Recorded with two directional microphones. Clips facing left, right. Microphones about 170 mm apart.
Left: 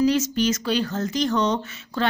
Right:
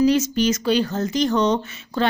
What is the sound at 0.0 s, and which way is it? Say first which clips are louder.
A woman's voice: right 3 dB; 15° right (ahead or behind).